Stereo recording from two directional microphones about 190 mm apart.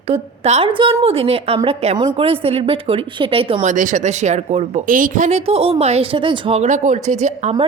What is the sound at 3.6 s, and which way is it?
Speech, 40° right (ahead or behind).